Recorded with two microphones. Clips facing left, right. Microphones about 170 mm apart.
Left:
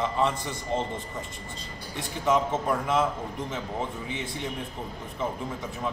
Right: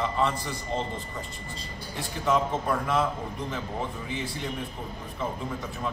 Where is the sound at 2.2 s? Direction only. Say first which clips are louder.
Left 1 dB; 20° left (ahead or behind).